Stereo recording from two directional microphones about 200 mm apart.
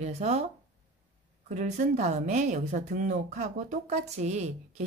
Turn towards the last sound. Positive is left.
turn(degrees=-35)  # may be behind; listen again after turning